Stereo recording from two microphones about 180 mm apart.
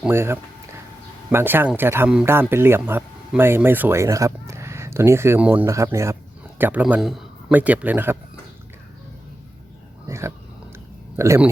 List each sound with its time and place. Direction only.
0.0 s a sound: 15° right (ahead or behind)
1.3 s speech: 10° right (ahead or behind)
10.1 s dog: 15° right (ahead or behind)
11.2 s speech: 15° right (ahead or behind)